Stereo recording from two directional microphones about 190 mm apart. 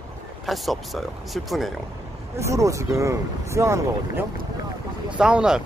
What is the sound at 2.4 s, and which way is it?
Speech, 15° right (ahead or behind).